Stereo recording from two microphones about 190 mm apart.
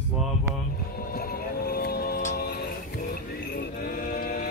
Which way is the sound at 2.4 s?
55° left (ahead or behind).